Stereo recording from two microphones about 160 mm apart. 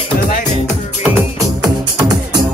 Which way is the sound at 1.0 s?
10° right (ahead or behind).